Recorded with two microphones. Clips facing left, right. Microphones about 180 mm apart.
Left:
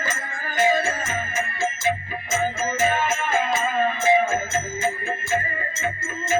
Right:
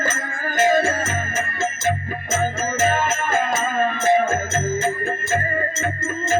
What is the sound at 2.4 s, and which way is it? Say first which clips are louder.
Music: right 1 dB; 45° right (ahead or behind).